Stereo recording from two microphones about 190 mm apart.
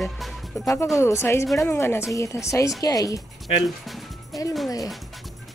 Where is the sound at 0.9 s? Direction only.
15° left (ahead or behind).